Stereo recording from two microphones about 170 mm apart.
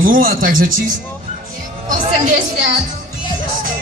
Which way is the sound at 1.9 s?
50° right (ahead or behind).